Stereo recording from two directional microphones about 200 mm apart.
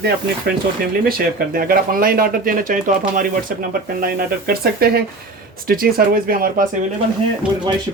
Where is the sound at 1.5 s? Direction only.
45° right (ahead or behind).